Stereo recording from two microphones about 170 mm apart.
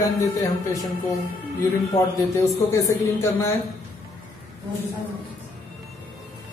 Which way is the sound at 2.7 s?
15° left (ahead or behind).